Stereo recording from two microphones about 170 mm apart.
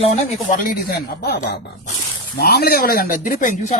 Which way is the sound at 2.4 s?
70° left (ahead or behind).